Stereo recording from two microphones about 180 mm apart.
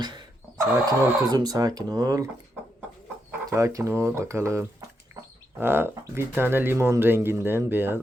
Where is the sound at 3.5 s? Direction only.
15° right (ahead or behind).